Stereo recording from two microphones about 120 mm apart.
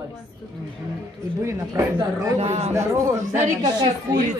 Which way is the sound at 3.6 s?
35° right (ahead or behind).